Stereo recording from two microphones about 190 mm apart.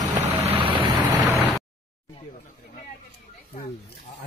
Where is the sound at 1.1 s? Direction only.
5° right (ahead or behind).